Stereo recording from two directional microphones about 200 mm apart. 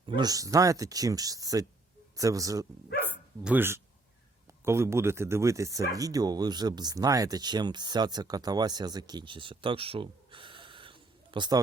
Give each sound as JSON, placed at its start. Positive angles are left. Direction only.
{"t": 0.0, "sound": "speech", "side_deg": -20}